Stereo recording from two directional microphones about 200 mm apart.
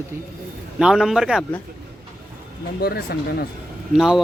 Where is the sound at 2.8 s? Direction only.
50° left (ahead or behind).